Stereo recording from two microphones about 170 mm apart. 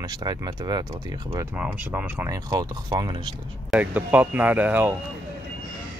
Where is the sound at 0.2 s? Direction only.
25° right (ahead or behind).